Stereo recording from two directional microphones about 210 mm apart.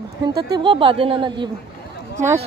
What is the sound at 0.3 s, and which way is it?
Speech, 20° right (ahead or behind).